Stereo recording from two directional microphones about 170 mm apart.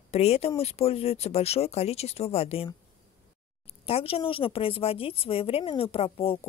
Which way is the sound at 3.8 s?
35° left (ahead or behind).